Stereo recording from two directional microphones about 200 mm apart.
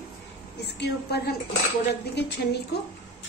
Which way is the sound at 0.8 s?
55° left (ahead or behind).